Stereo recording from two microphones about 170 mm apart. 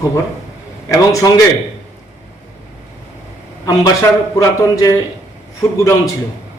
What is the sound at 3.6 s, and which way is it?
Speech, 20° left (ahead or behind).